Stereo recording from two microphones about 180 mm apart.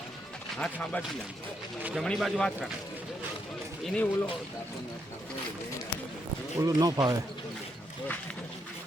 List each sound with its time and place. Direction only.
0.6 s speech: 5° left (ahead or behind)
1.8 s a man's voice: 5° right (ahead or behind)
3.8 s speech: 10° left (ahead or behind)
6.6 s speech: 20° right (ahead or behind)